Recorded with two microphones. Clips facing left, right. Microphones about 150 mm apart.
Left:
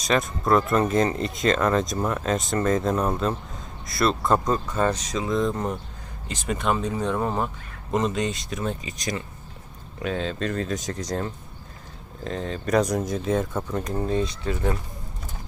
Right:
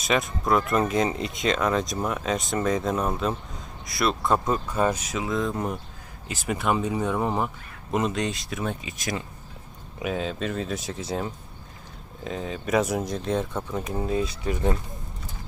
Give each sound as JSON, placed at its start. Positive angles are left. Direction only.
{"t": 0.0, "sound": "speech", "side_deg": 0}
{"t": 14.4, "sound": "speech", "side_deg": -20}